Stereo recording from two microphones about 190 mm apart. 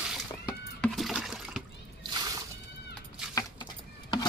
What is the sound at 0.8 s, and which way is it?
Water, centre (ahead or behind).